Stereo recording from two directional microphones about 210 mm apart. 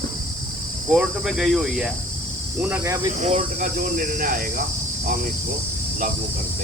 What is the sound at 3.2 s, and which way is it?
Speech, 35° right (ahead or behind).